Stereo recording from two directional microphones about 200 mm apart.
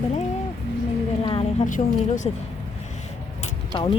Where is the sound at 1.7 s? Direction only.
40° left (ahead or behind).